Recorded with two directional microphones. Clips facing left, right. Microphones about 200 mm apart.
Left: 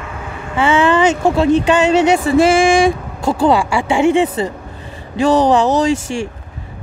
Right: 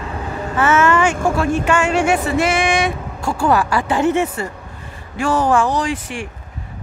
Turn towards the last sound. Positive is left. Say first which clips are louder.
# left 6 dB
turn(degrees=30)  # may be behind; listen again after turning